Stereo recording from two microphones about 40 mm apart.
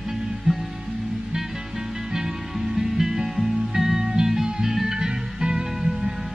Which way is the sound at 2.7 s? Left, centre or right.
Centre.